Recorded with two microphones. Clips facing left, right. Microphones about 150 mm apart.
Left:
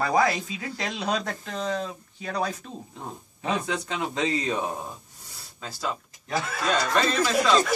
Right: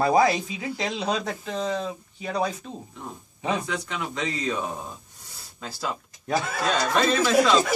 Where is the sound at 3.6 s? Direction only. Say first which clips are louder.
Left 1 dB; 25° left (ahead or behind).